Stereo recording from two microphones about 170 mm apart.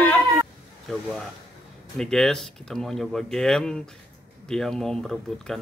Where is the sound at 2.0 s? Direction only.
5° left (ahead or behind).